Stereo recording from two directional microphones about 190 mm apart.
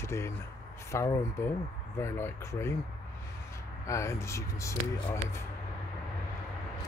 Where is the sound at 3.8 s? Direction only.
15° left (ahead or behind).